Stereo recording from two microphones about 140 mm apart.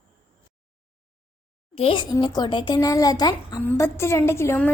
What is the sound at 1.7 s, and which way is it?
A woman's voice, 40° left (ahead or behind).